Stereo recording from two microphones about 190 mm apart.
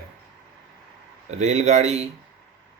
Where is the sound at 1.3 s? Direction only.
35° right (ahead or behind).